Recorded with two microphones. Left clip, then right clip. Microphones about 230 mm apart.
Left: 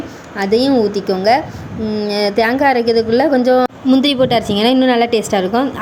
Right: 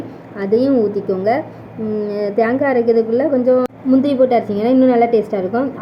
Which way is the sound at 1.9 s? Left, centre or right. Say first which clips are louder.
Left 2 dB; centre.